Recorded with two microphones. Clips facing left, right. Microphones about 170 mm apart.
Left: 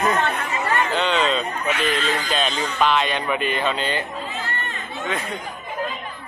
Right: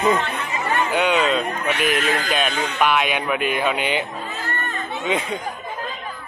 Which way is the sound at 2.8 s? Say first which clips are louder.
Even; 10° right (ahead or behind).